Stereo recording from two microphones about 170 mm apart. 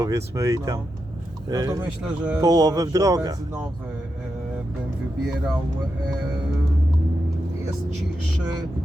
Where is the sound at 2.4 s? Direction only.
20° right (ahead or behind).